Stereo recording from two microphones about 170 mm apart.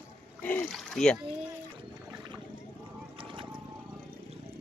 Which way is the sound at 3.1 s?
30° right (ahead or behind).